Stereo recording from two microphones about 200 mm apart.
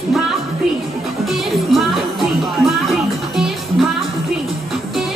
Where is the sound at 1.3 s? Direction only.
Centre (ahead or behind).